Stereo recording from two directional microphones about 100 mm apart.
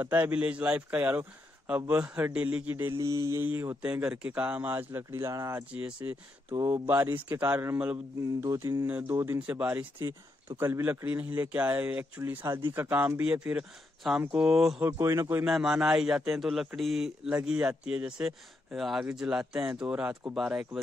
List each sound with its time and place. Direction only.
0.0 s speech: 20° right (ahead or behind)
3.0 s mantra: 30° right (ahead or behind)
3.4 s speech: 25° right (ahead or behind)
3.8 s speech: 10° right (ahead or behind)
5.3 s mantra: 35° right (ahead or behind)
5.6 s speech: 10° right (ahead or behind)
6.7 s speech: 25° right (ahead or behind)
8.2 s mantra: 30° right (ahead or behind)
8.8 s speech: 20° right (ahead or behind)
10.0 s a man's voice: 30° right (ahead or behind); by 14.8 s 5° right (ahead or behind)
14.8 s speech: 30° right (ahead or behind)
15.4 s a man's voice: 5° right (ahead or behind)